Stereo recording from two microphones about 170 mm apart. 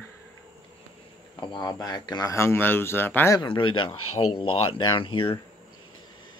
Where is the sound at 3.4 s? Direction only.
30° left (ahead or behind).